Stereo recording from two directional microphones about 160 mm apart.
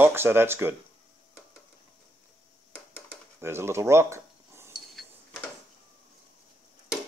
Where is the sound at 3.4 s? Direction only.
15° right (ahead or behind).